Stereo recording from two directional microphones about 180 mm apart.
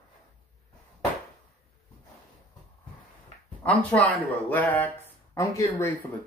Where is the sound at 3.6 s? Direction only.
10° left (ahead or behind).